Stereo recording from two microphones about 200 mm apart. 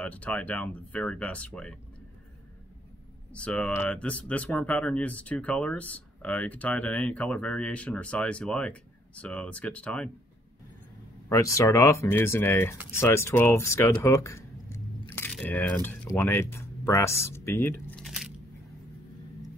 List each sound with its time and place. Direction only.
0.0 s speech: 5° left (ahead or behind)
3.3 s speech: 5° left (ahead or behind)
11.2 s speech: 15° left (ahead or behind)